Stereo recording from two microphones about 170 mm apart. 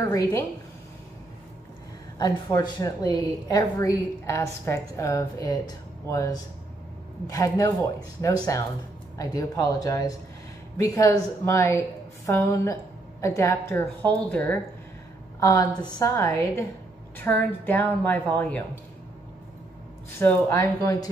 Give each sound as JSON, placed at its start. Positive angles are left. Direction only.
{"t": 0.0, "sound": "a woman's voice", "side_deg": 20}
{"t": 2.1, "sound": "a woman's voice", "side_deg": 25}
{"t": 15.4, "sound": "a woman's voice", "side_deg": 20}
{"t": 20.2, "sound": "a woman's voice", "side_deg": 15}